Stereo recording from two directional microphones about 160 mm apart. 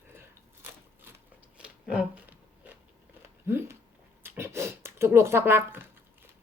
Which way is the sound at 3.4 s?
15° right (ahead or behind).